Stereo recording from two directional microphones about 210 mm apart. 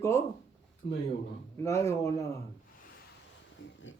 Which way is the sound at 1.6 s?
15° left (ahead or behind).